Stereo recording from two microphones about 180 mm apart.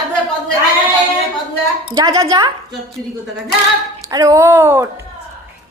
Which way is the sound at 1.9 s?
20° right (ahead or behind).